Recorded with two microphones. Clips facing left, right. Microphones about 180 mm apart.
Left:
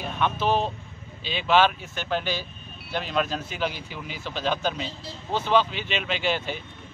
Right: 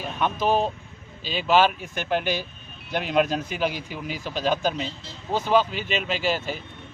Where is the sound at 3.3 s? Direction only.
50° right (ahead or behind).